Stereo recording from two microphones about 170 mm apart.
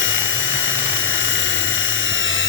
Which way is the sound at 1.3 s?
90° left.